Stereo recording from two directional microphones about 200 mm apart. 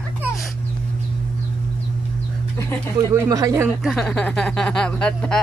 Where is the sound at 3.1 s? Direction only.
15° right (ahead or behind).